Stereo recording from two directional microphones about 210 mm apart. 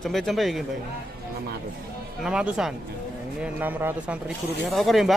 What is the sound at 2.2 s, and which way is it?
Speech, 5° right (ahead or behind).